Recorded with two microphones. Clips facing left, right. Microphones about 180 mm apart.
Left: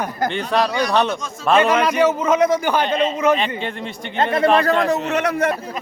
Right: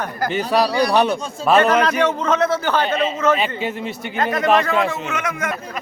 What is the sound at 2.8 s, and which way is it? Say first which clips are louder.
A man's voice: left 1 dB; 5° right (ahead or behind).